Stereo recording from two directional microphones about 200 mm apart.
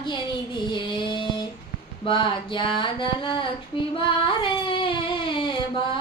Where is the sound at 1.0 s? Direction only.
25° left (ahead or behind).